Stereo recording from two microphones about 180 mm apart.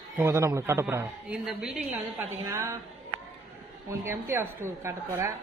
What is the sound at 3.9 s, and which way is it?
A woman's voice, 15° right (ahead or behind).